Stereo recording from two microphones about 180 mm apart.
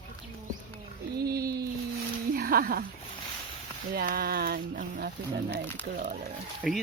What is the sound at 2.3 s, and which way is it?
Speech, 55° right (ahead or behind).